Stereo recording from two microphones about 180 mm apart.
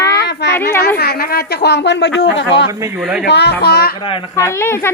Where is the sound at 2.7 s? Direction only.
15° right (ahead or behind).